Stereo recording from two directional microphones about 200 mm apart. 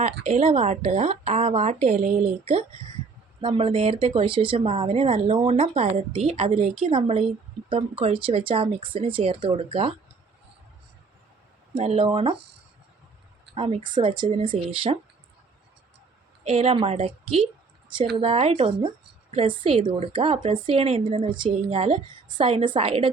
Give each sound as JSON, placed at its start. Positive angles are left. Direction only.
{"t": 0.3, "sound": "a woman's voice", "side_deg": -30}
{"t": 11.7, "sound": "speech", "side_deg": -30}
{"t": 13.5, "sound": "speech", "side_deg": -25}
{"t": 16.4, "sound": "a woman's voice", "side_deg": -30}